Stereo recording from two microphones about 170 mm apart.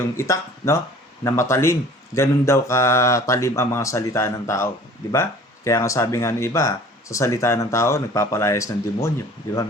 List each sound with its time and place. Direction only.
0.2 s speech: 15° left (ahead or behind)